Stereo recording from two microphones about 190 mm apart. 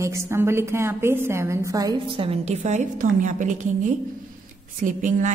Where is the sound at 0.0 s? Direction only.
15° right (ahead or behind); by 3.9 s 40° right (ahead or behind).